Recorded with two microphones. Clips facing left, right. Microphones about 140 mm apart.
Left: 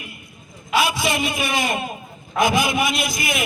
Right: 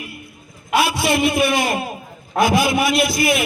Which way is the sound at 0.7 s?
60° right (ahead or behind).